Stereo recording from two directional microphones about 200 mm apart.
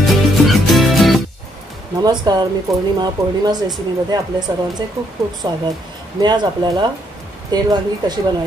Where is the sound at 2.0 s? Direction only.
20° right (ahead or behind).